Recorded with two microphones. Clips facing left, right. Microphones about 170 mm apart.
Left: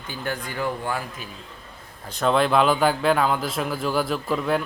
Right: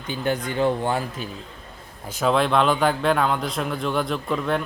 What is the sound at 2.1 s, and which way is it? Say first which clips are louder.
A man's voice: even; centre (ahead or behind).